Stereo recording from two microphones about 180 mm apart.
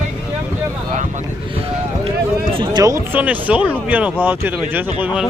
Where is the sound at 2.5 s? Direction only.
30° right (ahead or behind).